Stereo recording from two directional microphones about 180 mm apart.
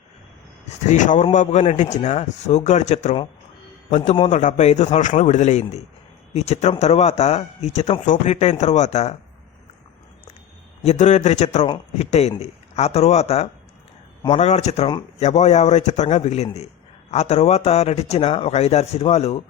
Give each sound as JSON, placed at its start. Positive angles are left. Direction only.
{"t": 0.9, "sound": "speech", "side_deg": 45}
{"t": 10.8, "sound": "speech", "side_deg": 40}